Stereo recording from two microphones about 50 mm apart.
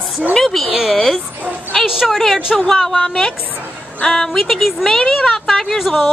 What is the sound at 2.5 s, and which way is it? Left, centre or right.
A woman's voice, centre.